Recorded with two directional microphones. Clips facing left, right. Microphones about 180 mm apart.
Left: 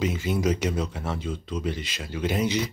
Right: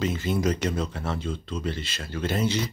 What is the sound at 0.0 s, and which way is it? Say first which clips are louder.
Speech: even; 10° left (ahead or behind).